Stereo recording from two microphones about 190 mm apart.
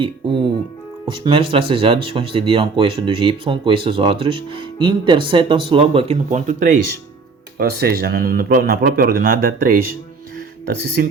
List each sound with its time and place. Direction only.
0.0 s speech: 25° right (ahead or behind)
6.5 s speech: 45° right (ahead or behind)